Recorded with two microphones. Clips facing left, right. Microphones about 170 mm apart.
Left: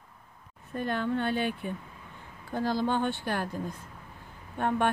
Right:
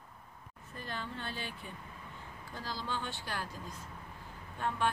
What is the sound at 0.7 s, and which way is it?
A woman's voice, 60° left (ahead or behind).